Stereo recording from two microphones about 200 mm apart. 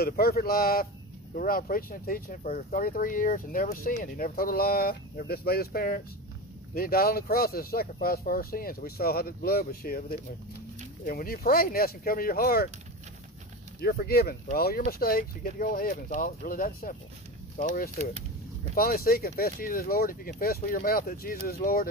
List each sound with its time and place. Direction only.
0.0 s speech: 50° left (ahead or behind)
13.7 s speech: 50° left (ahead or behind)